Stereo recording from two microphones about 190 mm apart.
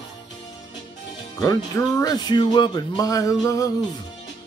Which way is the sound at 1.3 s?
20° left (ahead or behind).